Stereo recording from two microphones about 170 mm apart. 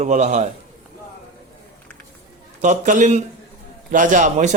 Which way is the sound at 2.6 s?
45° right (ahead or behind).